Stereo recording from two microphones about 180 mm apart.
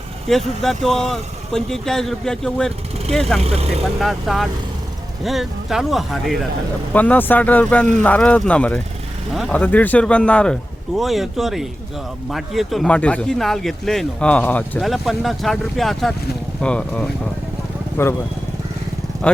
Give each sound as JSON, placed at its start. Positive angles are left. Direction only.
{"t": 0.3, "sound": "speech", "side_deg": 0}
{"t": 3.4, "sound": "speech", "side_deg": -35}
{"t": 4.0, "sound": "speech", "side_deg": 0}
{"t": 19.2, "sound": "speech", "side_deg": 5}